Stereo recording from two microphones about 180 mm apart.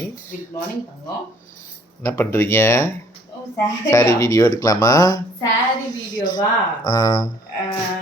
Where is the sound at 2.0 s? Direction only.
15° left (ahead or behind).